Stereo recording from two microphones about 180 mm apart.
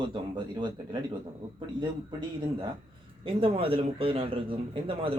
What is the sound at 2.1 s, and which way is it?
A man's voice, 25° right (ahead or behind).